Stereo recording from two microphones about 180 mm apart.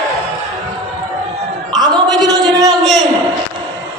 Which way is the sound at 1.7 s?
20° right (ahead or behind).